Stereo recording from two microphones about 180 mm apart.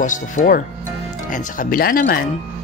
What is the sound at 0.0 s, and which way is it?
Speech, 45° left (ahead or behind).